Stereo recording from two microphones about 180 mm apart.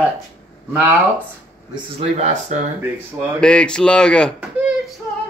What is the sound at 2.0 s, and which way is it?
Speech, 40° right (ahead or behind).